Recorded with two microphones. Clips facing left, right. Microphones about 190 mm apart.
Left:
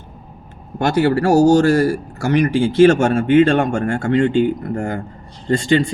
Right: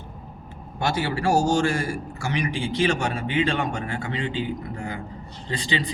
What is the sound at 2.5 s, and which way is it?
Speech, 45° left (ahead or behind).